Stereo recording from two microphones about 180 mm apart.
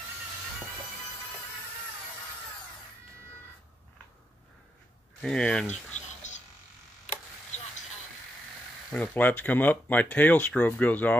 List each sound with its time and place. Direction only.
5.2 s speech: 5° left (ahead or behind)
5.9 s a sound: 40° left (ahead or behind)
8.9 s speech: 10° left (ahead or behind)